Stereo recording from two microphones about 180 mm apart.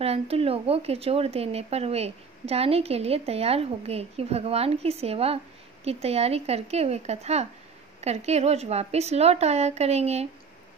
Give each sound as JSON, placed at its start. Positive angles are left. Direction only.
{"t": 0.0, "sound": "speech", "side_deg": -35}